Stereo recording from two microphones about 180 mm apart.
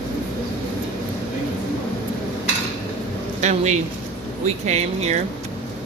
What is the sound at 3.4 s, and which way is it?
Speech, 40° right (ahead or behind).